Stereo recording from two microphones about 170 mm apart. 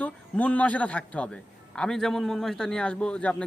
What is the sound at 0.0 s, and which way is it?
A man's voice, 10° left (ahead or behind).